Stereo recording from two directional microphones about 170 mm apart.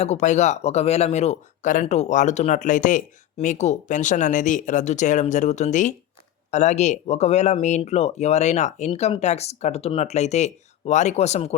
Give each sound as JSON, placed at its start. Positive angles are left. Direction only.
{"t": 0.0, "sound": "speech", "side_deg": 40}